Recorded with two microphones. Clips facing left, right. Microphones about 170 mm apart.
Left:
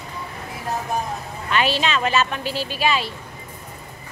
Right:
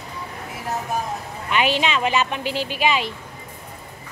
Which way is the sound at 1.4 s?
15° right (ahead or behind).